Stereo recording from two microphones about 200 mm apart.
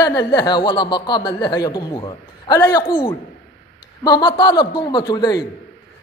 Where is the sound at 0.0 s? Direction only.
20° left (ahead or behind).